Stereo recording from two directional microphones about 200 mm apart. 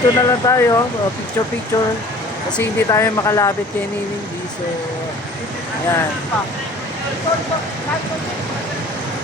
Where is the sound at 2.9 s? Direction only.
15° left (ahead or behind).